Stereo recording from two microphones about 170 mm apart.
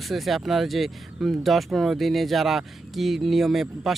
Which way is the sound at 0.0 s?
Centre (ahead or behind).